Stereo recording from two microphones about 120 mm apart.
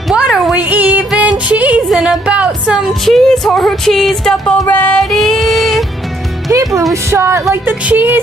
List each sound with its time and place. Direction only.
0.1 s a sound: 5° right (ahead or behind)
0.6 s music: 15° right (ahead or behind)
6.5 s music: 30° right (ahead or behind)
7.6 s speech: 15° right (ahead or behind)